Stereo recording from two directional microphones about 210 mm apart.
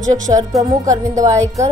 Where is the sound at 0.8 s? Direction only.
15° right (ahead or behind).